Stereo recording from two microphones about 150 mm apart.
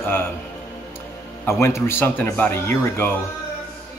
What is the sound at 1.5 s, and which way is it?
Speech, 20° left (ahead or behind).